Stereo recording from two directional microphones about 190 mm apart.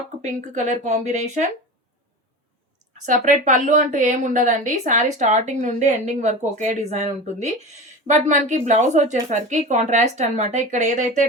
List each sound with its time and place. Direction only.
0.2 s a woman's voice: 40° right (ahead or behind)
3.1 s a woman's voice: 40° right (ahead or behind)